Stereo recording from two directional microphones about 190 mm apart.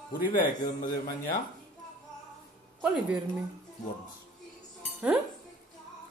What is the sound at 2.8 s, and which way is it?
Speech, 5° right (ahead or behind).